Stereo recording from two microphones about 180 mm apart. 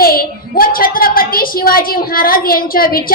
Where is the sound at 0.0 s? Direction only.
55° left (ahead or behind).